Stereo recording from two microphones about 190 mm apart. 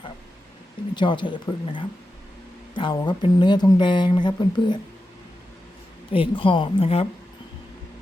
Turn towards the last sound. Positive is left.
turn(degrees=30)  # may be behind; listen again after turning